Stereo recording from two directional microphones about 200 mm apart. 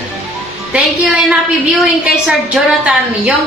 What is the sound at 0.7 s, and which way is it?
A woman's voice, 5° right (ahead or behind).